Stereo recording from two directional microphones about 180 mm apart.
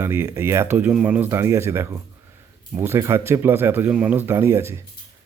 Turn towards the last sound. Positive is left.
turn(degrees=-15)  # may be behind; listen again after turning